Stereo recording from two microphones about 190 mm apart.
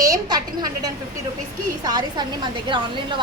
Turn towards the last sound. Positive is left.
turn(degrees=-25)  # may be behind; listen again after turning